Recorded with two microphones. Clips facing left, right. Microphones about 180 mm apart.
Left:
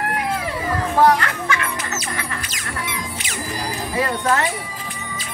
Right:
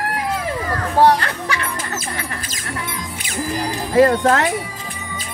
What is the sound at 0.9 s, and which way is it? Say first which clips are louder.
Music: right 2 dB; 30° right (ahead or behind).